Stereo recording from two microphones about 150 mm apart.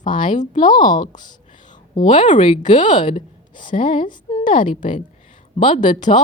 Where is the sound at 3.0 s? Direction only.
45° left (ahead or behind).